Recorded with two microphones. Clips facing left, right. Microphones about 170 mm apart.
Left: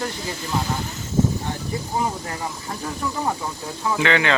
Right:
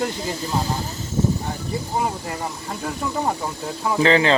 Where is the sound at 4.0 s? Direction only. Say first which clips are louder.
Right 4 dB; 30° right (ahead or behind).